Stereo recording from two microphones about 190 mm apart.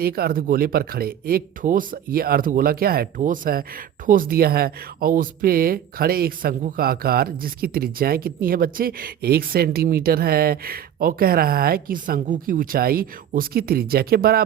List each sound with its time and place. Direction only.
0.0 s speech: 55° right (ahead or behind)